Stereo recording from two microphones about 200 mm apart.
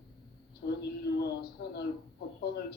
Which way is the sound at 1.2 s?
55° left (ahead or behind).